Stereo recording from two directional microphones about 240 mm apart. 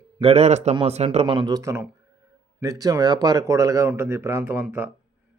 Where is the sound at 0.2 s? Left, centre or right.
Right.